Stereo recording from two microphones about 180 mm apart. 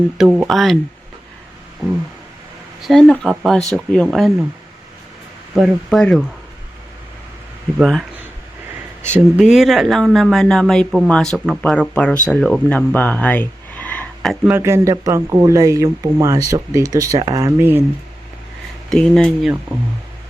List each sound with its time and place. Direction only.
0.2 s speech: 5° right (ahead or behind)
2.8 s speech: 5° left (ahead or behind)
5.5 s speech: centre (ahead or behind)
7.8 s speech: centre (ahead or behind)
9.1 s speech: 5° right (ahead or behind)
14.5 s speech: 15° right (ahead or behind)
18.9 s speech: 5° left (ahead or behind)